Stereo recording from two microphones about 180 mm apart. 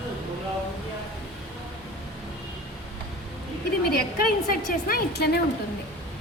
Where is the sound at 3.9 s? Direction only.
55° left (ahead or behind).